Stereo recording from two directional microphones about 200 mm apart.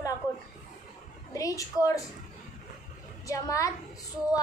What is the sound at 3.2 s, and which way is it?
Speech, 15° left (ahead or behind).